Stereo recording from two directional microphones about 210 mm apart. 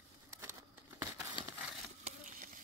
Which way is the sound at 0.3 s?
15° right (ahead or behind).